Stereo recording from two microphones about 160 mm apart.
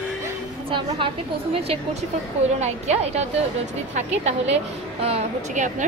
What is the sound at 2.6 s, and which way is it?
A woman's voice, 40° right (ahead or behind).